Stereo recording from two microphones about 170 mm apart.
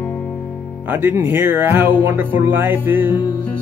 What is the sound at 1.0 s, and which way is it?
Music, 10° right (ahead or behind).